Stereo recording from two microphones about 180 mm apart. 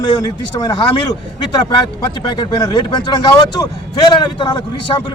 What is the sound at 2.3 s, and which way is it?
A man's voice, 20° left (ahead or behind).